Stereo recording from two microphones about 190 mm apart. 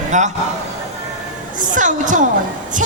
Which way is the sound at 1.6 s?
40° right (ahead or behind).